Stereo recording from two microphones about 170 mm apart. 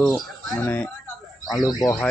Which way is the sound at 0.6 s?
10° left (ahead or behind).